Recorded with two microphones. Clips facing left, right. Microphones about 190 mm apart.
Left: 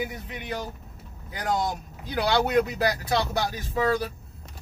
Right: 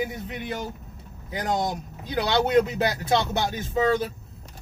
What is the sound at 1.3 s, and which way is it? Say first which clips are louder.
Speech: right 1 dB; 20° right (ahead or behind).